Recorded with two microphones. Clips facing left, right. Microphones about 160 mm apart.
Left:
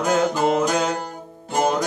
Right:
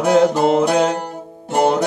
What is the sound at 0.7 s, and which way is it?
Music, 35° right (ahead or behind).